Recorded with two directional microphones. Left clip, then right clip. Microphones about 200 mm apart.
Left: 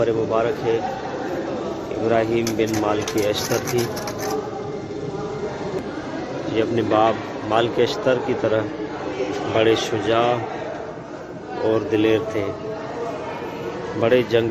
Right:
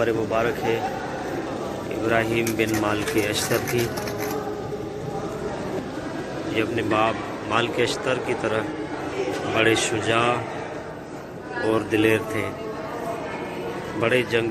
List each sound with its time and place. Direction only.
0.0 s speech: 5° left (ahead or behind)
2.0 s speech: 10° left (ahead or behind)
6.5 s a man's voice: 20° left (ahead or behind)
11.7 s speech: 5° left (ahead or behind)
14.0 s a man's voice: 20° left (ahead or behind)